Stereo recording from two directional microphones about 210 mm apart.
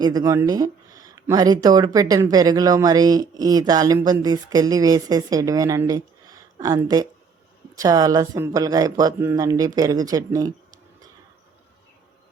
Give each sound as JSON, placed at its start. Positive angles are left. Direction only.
{"t": 0.0, "sound": "speech", "side_deg": -15}